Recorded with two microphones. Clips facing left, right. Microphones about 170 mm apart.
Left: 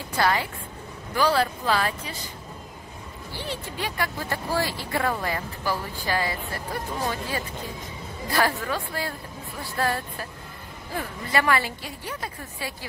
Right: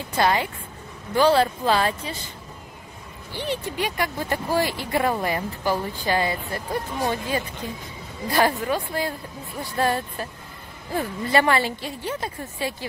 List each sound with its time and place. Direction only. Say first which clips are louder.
0.2 s speech: right 2 dB; 20° right (ahead or behind)
3.3 s speech: right 6 dB; 20° right (ahead or behind)